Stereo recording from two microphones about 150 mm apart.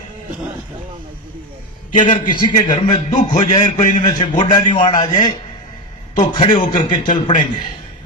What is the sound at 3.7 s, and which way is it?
Speech, 50° left (ahead or behind).